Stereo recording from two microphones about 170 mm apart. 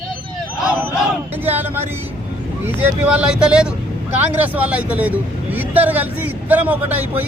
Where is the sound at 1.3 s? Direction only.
10° right (ahead or behind).